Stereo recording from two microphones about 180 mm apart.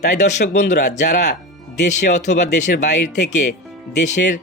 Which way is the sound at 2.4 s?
45° left (ahead or behind).